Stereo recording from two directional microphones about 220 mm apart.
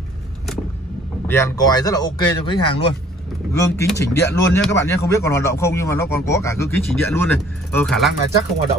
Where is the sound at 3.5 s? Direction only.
15° left (ahead or behind).